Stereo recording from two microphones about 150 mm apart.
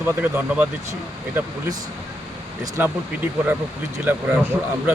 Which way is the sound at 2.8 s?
10° right (ahead or behind).